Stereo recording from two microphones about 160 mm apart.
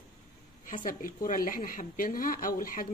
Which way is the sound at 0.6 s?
60° left (ahead or behind).